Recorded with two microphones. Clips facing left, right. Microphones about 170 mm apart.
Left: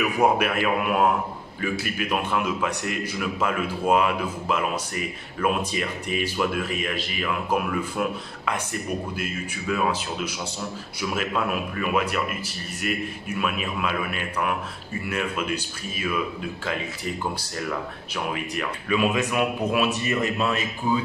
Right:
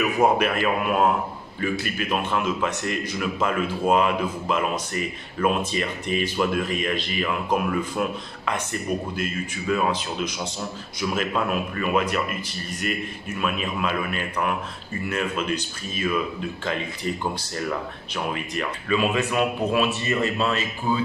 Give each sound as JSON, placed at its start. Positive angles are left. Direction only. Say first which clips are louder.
{"t": 0.2, "sound": "a man's voice", "louder": "right 1 dB", "side_deg": 10}